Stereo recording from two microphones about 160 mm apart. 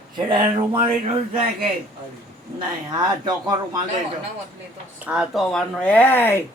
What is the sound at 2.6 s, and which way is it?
Speech, 25° right (ahead or behind).